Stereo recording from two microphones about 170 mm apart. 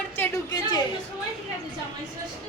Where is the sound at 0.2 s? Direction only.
20° left (ahead or behind).